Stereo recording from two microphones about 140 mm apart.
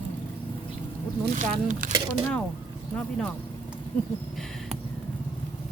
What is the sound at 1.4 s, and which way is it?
Speech, 65° right (ahead or behind).